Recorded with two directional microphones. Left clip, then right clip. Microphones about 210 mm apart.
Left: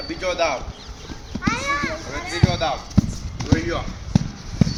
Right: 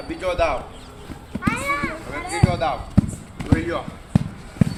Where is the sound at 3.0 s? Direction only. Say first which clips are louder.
Right 1 dB; 20° right (ahead or behind).